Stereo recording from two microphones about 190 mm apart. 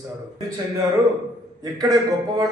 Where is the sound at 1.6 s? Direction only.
20° right (ahead or behind).